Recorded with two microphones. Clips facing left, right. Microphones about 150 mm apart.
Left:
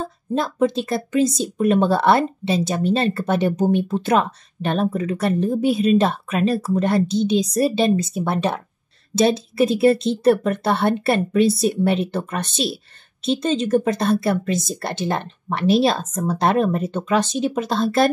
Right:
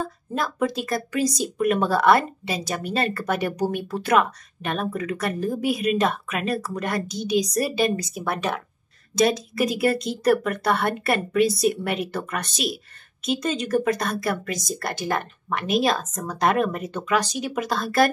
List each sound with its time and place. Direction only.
0.0 s speech: 25° left (ahead or behind)